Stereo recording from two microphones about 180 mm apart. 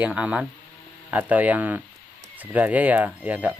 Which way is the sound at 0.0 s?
5° right (ahead or behind).